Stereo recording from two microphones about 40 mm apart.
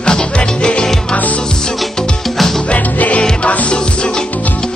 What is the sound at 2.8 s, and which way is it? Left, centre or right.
Music, left.